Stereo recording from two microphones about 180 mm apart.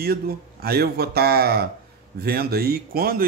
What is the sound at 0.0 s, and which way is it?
Speech, 60° right (ahead or behind).